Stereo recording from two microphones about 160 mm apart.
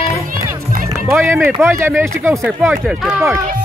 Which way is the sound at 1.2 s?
15° right (ahead or behind).